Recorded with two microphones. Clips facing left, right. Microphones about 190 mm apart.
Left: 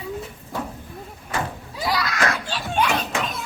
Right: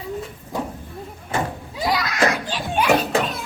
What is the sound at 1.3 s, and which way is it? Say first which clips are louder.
Children playing: right 3 dB; 25° right (ahead or behind).